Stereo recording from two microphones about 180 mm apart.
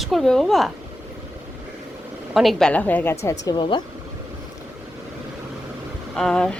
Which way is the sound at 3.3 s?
20° left (ahead or behind).